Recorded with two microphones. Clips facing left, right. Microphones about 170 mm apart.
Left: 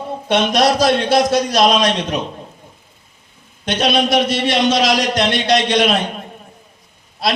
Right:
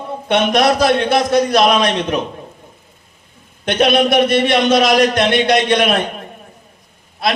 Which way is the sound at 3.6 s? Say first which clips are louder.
Right 3 dB; 55° right (ahead or behind).